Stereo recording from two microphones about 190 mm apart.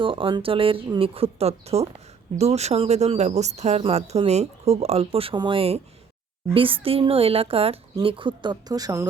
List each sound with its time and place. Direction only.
0.0 s speech: 25° right (ahead or behind)